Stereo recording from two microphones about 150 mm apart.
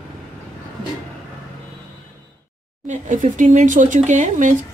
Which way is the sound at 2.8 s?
55° right (ahead or behind).